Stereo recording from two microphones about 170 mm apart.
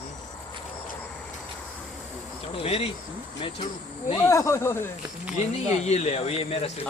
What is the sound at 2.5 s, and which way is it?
Speech, 35° left (ahead or behind).